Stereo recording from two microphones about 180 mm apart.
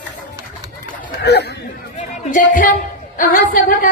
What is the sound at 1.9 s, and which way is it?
Music, 45° left (ahead or behind).